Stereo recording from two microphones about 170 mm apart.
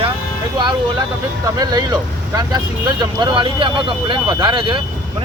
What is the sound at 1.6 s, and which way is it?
Speech, 25° right (ahead or behind).